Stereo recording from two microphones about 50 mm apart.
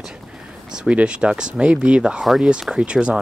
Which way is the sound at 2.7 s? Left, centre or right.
Centre.